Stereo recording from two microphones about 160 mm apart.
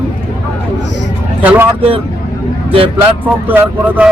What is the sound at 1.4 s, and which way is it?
Speech, 10° right (ahead or behind).